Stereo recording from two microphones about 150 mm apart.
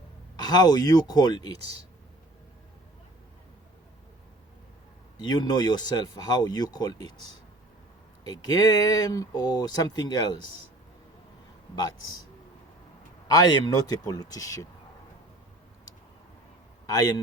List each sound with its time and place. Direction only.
0.3 s speech: 25° left (ahead or behind)
5.2 s speech: 30° left (ahead or behind)
8.2 s speech: 25° left (ahead or behind)
13.2 s speech: 25° left (ahead or behind)
16.8 s a man's voice: 25° left (ahead or behind)